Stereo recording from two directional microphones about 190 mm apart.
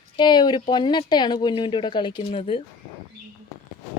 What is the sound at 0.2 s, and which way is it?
Speech, 25° left (ahead or behind).